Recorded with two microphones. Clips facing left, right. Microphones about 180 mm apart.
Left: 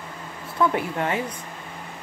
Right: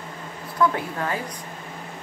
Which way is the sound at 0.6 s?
25° left (ahead or behind).